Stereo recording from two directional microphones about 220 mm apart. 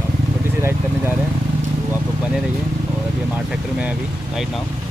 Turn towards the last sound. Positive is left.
turn(degrees=-5)  # may be behind; listen again after turning